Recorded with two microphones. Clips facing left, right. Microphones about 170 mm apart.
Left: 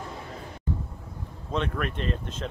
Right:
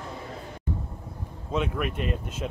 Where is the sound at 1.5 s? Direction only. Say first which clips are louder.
Right 1 dB; 10° right (ahead or behind).